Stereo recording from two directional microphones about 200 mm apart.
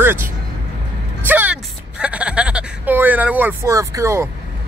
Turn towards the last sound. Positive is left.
turn(degrees=-15)  # may be behind; listen again after turning